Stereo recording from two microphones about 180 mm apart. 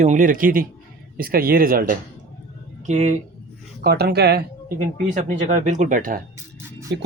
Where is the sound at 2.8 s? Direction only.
40° right (ahead or behind).